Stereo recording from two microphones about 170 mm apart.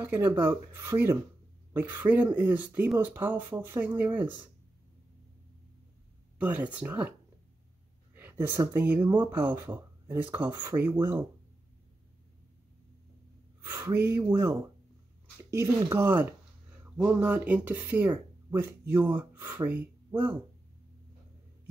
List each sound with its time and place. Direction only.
0.0 s speech: 10° right (ahead or behind)
6.4 s speech: 10° right (ahead or behind)
9.0 s speech: 25° right (ahead or behind)
9.3 s speech: 10° right (ahead or behind)
13.7 s speech: 15° right (ahead or behind)